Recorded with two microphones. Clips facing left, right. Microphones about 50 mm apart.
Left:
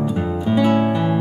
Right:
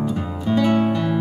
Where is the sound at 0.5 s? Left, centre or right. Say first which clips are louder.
Left 1 dB; centre.